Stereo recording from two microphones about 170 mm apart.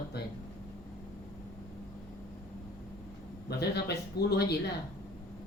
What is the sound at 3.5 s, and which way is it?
Speech, 75° left (ahead or behind).